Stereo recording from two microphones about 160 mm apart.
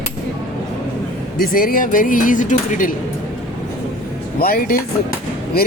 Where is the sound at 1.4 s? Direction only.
60° left (ahead or behind).